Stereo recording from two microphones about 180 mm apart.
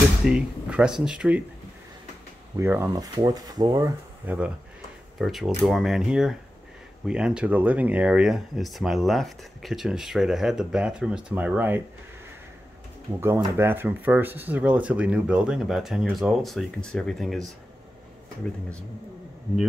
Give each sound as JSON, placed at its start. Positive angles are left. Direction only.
{"t": 0.2, "sound": "speech", "side_deg": -5}
{"t": 2.5, "sound": "speech", "side_deg": -15}
{"t": 4.2, "sound": "speech", "side_deg": -10}
{"t": 13.2, "sound": "speech", "side_deg": -15}